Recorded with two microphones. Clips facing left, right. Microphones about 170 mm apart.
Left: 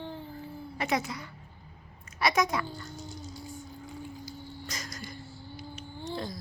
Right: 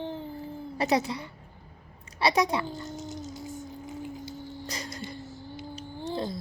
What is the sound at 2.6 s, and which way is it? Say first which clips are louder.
Cat: right 5 dB; 20° right (ahead or behind).